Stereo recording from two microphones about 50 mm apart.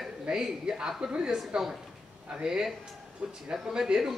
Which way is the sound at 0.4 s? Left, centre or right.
Centre.